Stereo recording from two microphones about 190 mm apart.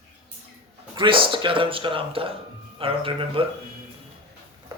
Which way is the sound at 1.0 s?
25° right (ahead or behind).